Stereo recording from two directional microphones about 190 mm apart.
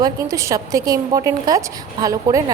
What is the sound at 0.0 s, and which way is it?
A woman's voice, 20° right (ahead or behind).